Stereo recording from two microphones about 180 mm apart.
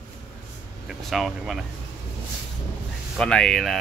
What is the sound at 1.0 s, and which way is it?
Speech, centre (ahead or behind).